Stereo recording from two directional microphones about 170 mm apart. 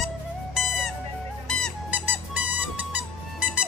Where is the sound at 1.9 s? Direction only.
10° right (ahead or behind).